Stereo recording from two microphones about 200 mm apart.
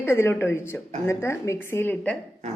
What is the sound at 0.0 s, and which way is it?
Speech, 15° left (ahead or behind).